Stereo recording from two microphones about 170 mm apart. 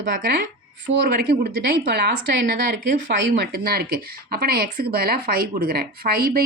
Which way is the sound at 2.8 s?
65° right (ahead or behind).